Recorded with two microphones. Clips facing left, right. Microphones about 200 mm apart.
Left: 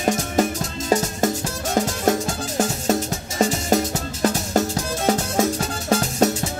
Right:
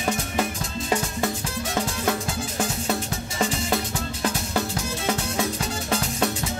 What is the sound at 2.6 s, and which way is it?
Music, 40° left (ahead or behind).